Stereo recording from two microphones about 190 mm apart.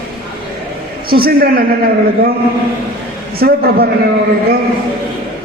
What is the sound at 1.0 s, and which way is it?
Speech, 50° right (ahead or behind).